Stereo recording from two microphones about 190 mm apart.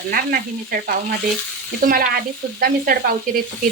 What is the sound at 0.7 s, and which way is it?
Frying, 50° right (ahead or behind).